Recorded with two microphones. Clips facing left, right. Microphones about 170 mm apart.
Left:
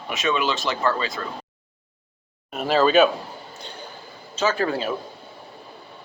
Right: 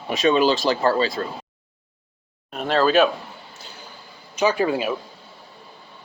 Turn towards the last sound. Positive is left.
turn(degrees=-10)  # may be behind; listen again after turning